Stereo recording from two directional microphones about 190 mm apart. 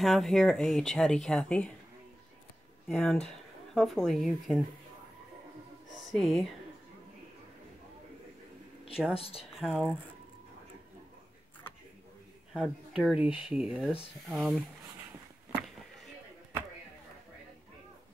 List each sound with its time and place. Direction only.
0.0 s speech: centre (ahead or behind)
2.9 s speech: centre (ahead or behind)
5.9 s speech: centre (ahead or behind)
9.1 s speech: 30° left (ahead or behind)
9.6 s speech: centre (ahead or behind)
12.5 s speech: 5° right (ahead or behind)